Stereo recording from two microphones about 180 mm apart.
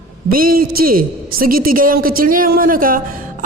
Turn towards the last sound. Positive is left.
turn(degrees=-50)  # may be behind; listen again after turning